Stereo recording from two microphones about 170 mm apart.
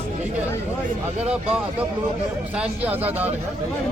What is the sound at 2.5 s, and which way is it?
Speech, 10° right (ahead or behind).